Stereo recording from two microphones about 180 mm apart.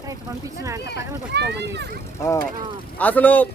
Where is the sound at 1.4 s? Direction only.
70° right (ahead or behind).